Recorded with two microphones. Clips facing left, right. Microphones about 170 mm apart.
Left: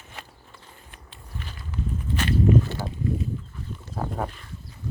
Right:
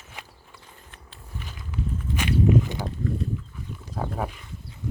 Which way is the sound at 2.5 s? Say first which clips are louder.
Left 2 dB; 15° right (ahead or behind).